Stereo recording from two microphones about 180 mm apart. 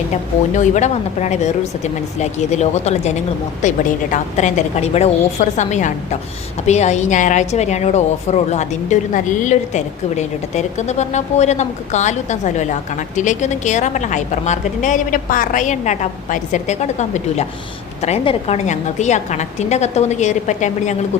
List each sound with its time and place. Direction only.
0.1 s a woman's voice: 40° left (ahead or behind)